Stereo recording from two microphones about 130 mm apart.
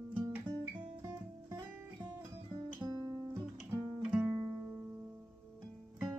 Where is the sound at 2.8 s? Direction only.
25° right (ahead or behind).